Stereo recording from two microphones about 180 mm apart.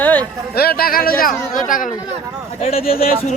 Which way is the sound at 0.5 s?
60° left (ahead or behind).